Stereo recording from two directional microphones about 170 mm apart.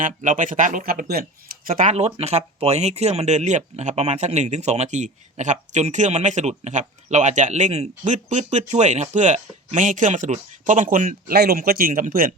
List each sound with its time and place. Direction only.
0.0 s speech: 50° right (ahead or behind)